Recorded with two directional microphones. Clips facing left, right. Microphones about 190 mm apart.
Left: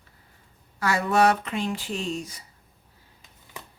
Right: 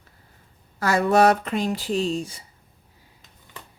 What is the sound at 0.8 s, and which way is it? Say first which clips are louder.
Speech: right 4 dB; 40° right (ahead or behind).